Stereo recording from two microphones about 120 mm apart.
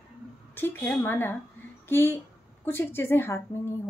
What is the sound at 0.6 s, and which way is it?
A woman's voice, 15° left (ahead or behind).